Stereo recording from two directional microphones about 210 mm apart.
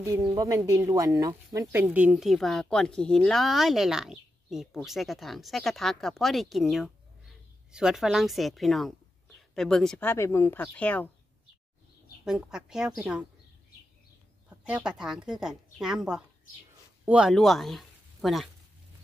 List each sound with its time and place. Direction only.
0.3 s speech: 15° right (ahead or behind); by 11.1 s 5° left (ahead or behind)
12.3 s speech: 5° right (ahead or behind)
14.7 s speech: 5° right (ahead or behind)